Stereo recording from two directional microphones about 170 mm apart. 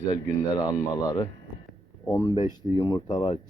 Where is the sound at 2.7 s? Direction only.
20° left (ahead or behind).